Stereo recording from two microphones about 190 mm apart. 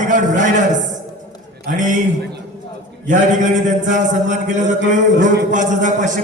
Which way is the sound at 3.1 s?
40° right (ahead or behind).